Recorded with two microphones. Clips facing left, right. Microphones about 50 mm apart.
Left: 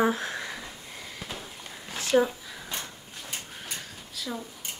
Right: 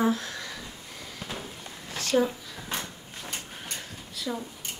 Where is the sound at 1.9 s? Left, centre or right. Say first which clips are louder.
Left 2 dB; left.